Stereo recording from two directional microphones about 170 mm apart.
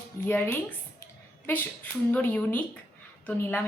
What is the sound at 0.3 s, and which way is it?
A woman's voice, 10° left (ahead or behind).